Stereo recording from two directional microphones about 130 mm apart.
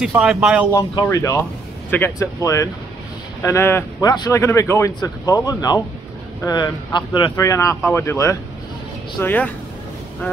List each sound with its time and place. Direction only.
0.0 s speech: 5° right (ahead or behind)
1.0 s speech: 25° left (ahead or behind)